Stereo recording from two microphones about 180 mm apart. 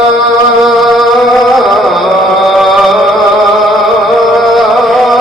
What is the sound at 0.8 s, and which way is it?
Chant, centre (ahead or behind).